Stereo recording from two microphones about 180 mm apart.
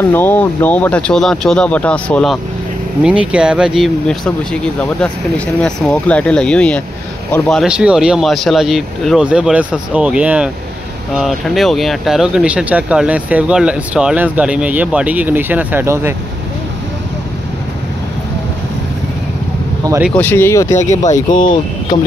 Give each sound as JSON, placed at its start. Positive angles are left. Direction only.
{"t": 0.1, "sound": "speech", "side_deg": 10}
{"t": 3.0, "sound": "speech", "side_deg": -5}
{"t": 20.2, "sound": "speech", "side_deg": 10}
{"t": 20.7, "sound": "speech", "side_deg": 40}